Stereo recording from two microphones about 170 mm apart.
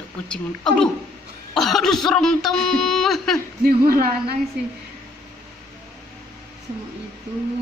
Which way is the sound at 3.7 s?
60° right (ahead or behind).